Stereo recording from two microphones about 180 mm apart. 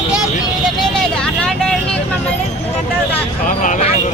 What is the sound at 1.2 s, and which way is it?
Vehicle, 5° left (ahead or behind).